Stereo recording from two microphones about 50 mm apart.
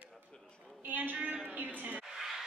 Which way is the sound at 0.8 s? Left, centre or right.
Right.